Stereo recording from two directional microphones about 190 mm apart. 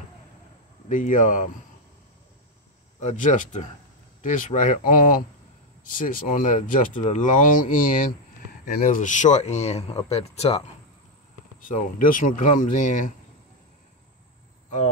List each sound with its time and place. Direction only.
0.8 s speech: 40° left (ahead or behind)
3.0 s speech: 40° left (ahead or behind)
11.6 s speech: 45° left (ahead or behind)